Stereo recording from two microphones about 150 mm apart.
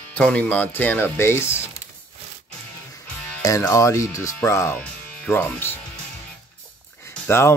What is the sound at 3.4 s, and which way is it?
Speech, 20° left (ahead or behind).